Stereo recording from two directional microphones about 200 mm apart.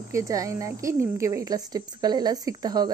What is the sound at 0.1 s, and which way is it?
Speech, 15° right (ahead or behind).